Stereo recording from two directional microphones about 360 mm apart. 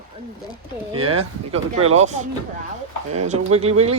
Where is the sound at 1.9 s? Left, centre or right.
Centre.